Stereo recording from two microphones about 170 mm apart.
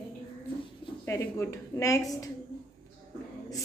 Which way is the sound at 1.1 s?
15° left (ahead or behind).